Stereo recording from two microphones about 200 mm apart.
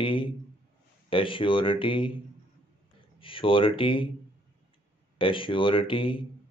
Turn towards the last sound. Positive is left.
turn(degrees=25)  # may be behind; listen again after turning